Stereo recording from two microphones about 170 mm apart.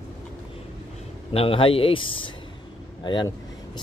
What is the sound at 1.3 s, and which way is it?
A man's voice, 30° left (ahead or behind).